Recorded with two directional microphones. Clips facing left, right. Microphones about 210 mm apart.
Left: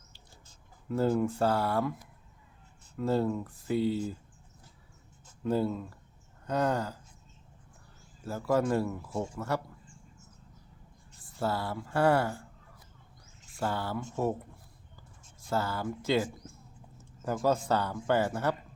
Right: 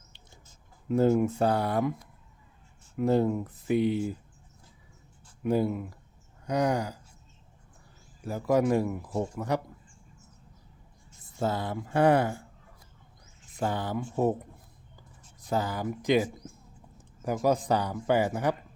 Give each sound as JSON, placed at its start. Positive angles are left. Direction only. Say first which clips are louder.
{"t": 0.9, "sound": "speech", "louder": "right 4 dB", "side_deg": -20}
{"t": 2.9, "sound": "speech", "louder": "right 4 dB", "side_deg": -20}
{"t": 5.4, "sound": "speech", "louder": "right 3 dB", "side_deg": -15}
{"t": 6.4, "sound": "a sound", "louder": "right 2 dB", "side_deg": -15}
{"t": 8.2, "sound": "speech", "louder": "right 3 dB", "side_deg": -15}
{"t": 11.2, "sound": "speech", "louder": "right 2 dB", "side_deg": -20}
{"t": 13.5, "sound": "speech", "louder": "right 3 dB", "side_deg": -20}
{"t": 15.4, "sound": "speech", "louder": "right 2 dB", "side_deg": -15}
{"t": 17.2, "sound": "speech", "louder": "right 2 dB", "side_deg": -15}